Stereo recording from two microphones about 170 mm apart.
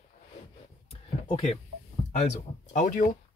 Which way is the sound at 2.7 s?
50° left (ahead or behind).